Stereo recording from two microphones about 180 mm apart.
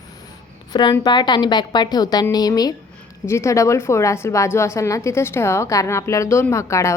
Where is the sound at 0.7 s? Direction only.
25° left (ahead or behind).